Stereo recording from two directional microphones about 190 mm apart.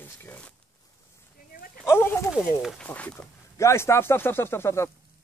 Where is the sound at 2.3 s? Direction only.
Centre (ahead or behind).